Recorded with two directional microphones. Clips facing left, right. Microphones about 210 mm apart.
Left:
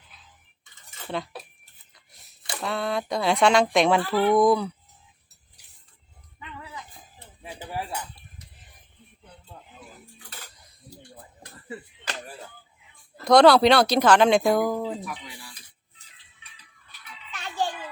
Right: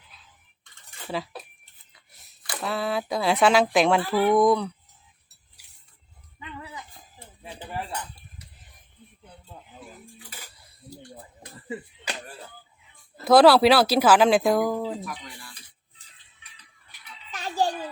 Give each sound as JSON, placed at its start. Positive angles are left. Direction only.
{"t": 0.6, "sound": "cutlery", "side_deg": 0}
{"t": 2.6, "sound": "speech", "side_deg": 0}
{"t": 7.4, "sound": "cutlery", "side_deg": 10}
{"t": 10.2, "sound": "cutlery", "side_deg": -10}
{"t": 13.2, "sound": "speech", "side_deg": -5}
{"t": 17.3, "sound": "music", "side_deg": -40}